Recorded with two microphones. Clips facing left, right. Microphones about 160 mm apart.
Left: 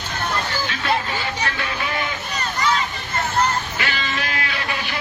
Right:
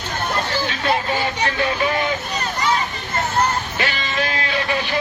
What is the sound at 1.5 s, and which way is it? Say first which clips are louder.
Vehicle: right 6 dB; 30° right (ahead or behind).